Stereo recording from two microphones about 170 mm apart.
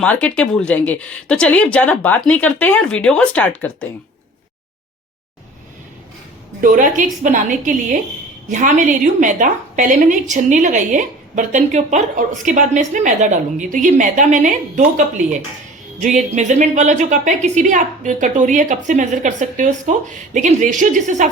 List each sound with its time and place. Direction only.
0.0 s speech: 5° left (ahead or behind)
6.6 s a woman's voice: 50° right (ahead or behind)